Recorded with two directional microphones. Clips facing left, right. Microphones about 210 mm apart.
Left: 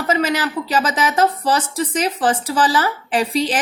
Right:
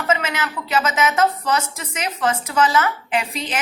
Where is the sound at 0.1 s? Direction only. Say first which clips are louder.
Left 4 dB; 35° left (ahead or behind).